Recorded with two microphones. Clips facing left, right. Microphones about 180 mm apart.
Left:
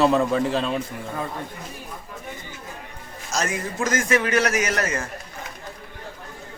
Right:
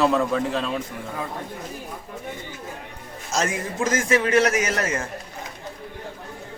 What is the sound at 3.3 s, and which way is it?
A man's voice, 25° right (ahead or behind).